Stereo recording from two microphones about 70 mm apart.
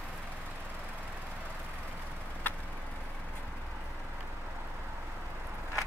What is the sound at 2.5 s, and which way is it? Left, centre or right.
Vehicle, left.